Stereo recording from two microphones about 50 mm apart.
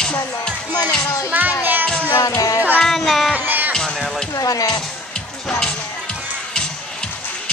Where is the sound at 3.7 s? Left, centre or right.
Centre.